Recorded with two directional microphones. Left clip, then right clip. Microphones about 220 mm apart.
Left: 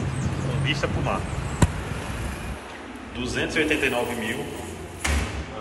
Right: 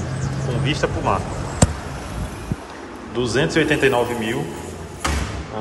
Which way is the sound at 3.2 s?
25° right (ahead or behind).